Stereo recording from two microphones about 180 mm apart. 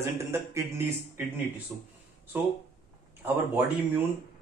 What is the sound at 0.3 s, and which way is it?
A man's voice, 15° right (ahead or behind).